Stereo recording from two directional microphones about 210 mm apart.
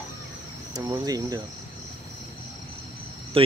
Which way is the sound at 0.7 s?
15° right (ahead or behind).